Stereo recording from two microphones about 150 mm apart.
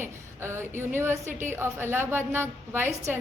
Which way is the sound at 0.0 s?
15° right (ahead or behind).